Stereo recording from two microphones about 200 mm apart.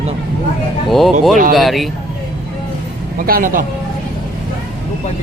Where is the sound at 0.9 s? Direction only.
Centre (ahead or behind).